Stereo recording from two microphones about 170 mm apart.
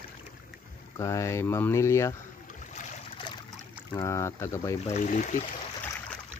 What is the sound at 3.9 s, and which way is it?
Speech, 15° left (ahead or behind).